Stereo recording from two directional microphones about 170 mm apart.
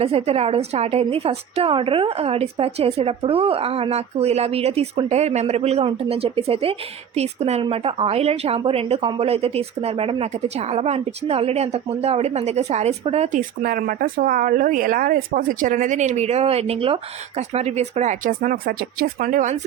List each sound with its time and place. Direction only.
0.0 s a woman's voice: 35° right (ahead or behind)